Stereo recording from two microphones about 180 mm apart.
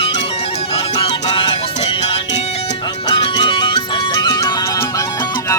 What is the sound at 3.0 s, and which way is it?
Music, 25° left (ahead or behind).